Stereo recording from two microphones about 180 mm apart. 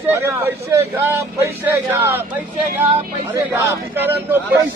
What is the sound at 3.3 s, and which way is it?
Speech, 15° right (ahead or behind).